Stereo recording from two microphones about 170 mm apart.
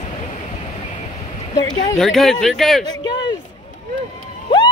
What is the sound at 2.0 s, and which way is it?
Speech, centre (ahead or behind).